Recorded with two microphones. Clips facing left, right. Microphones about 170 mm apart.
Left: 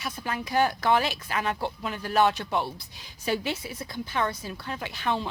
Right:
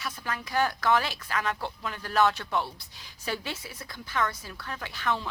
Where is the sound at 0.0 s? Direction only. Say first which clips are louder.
Left 3 dB; 20° left (ahead or behind).